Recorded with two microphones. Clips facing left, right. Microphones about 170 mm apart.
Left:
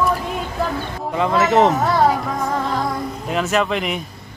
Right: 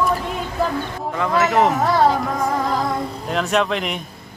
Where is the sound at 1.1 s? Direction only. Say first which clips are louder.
Left 2 dB; 20° left (ahead or behind).